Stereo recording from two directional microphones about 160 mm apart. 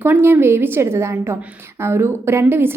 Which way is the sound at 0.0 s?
15° right (ahead or behind).